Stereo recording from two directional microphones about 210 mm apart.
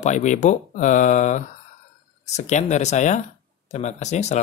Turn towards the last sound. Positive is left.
turn(degrees=35)  # may be behind; listen again after turning